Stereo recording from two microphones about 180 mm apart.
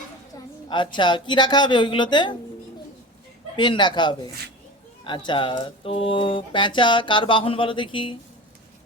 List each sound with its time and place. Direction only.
0.7 s speech: 25° left (ahead or behind)
3.5 s speech: 25° left (ahead or behind)